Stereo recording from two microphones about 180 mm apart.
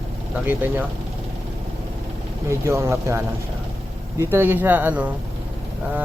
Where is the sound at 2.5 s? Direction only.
15° right (ahead or behind).